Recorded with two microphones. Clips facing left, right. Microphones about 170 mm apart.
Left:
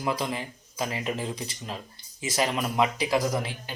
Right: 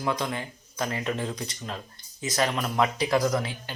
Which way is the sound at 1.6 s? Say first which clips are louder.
Right 1 dB; 10° left (ahead or behind).